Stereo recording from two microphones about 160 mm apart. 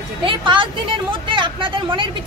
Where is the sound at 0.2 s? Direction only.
30° right (ahead or behind).